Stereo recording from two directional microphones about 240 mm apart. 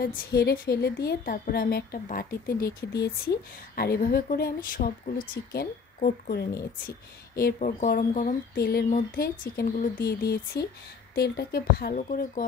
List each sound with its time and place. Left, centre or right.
0.0 s a woman's voice: left